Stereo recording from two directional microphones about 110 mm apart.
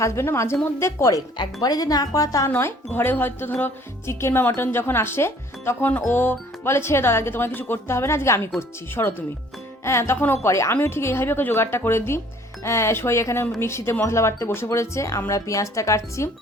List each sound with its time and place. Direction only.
0.0 s speech: 25° left (ahead or behind)
2.5 s speech: 20° left (ahead or behind)